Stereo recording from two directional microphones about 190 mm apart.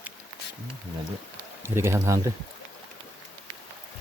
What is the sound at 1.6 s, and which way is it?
Speech, 15° right (ahead or behind).